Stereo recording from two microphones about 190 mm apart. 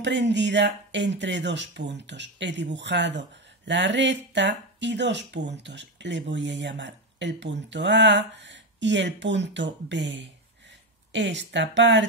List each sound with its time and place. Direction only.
0.0 s speech: 70° right (ahead or behind)